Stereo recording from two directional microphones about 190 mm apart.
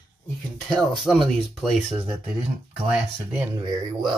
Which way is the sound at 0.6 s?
Centre (ahead or behind).